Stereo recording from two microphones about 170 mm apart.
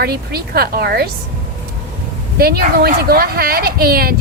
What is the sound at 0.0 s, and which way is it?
Speech, 65° right (ahead or behind).